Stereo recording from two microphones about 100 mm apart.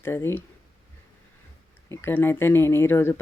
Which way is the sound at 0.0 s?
25° left (ahead or behind).